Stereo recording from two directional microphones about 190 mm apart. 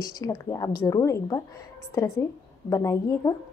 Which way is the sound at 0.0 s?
20° left (ahead or behind).